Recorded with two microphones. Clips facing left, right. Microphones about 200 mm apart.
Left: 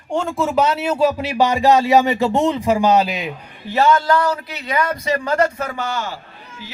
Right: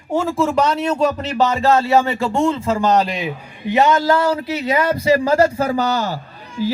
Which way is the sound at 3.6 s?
20° right (ahead or behind).